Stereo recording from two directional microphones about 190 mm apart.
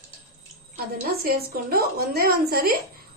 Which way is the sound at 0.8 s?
55° right (ahead or behind).